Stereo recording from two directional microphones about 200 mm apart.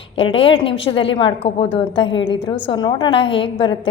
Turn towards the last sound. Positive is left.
turn(degrees=25)  # may be behind; listen again after turning